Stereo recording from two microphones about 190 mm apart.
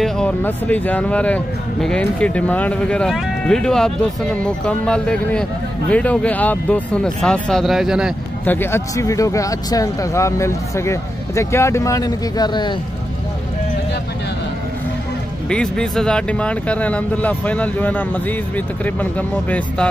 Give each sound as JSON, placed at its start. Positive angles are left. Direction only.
{"t": 0.0, "sound": "speech", "side_deg": 5}
{"t": 8.5, "sound": "speech", "side_deg": 10}
{"t": 15.5, "sound": "speech", "side_deg": 5}